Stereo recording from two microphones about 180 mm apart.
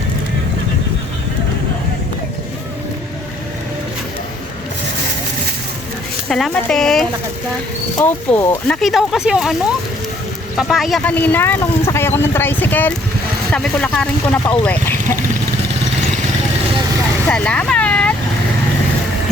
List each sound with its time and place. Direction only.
6.2 s speech: 5° left (ahead or behind)
17.2 s vehicle: 5° left (ahead or behind)